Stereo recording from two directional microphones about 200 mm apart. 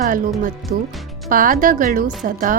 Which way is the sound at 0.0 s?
45° right (ahead or behind).